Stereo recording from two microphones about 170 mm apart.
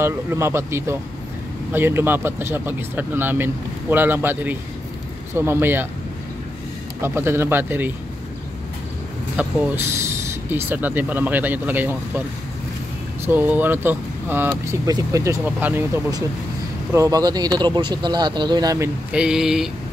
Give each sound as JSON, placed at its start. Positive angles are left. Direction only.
{"t": 0.0, "sound": "speech", "side_deg": -15}
{"t": 7.0, "sound": "speech", "side_deg": -15}
{"t": 9.4, "sound": "speech", "side_deg": -10}
{"t": 13.2, "sound": "speech", "side_deg": -10}
{"t": 19.1, "sound": "a sound", "side_deg": -5}